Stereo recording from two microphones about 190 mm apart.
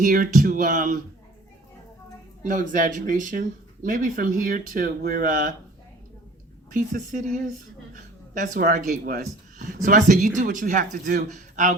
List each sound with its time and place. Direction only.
0.0 s speech: 45° right (ahead or behind)
2.4 s speech: 45° right (ahead or behind)
6.7 s speech: 45° right (ahead or behind)
7.9 s a sound: 40° right (ahead or behind)
9.0 s speech: 45° right (ahead or behind)